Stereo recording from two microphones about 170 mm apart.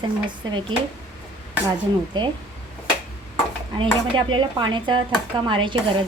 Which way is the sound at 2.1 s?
25° right (ahead or behind).